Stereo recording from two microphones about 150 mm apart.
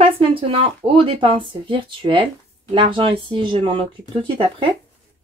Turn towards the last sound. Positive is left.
turn(degrees=-35)  # may be behind; listen again after turning